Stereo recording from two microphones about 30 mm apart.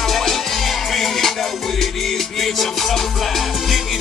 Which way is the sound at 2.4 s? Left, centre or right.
Centre.